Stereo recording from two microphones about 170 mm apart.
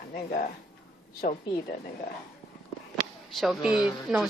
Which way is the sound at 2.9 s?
Centre (ahead or behind).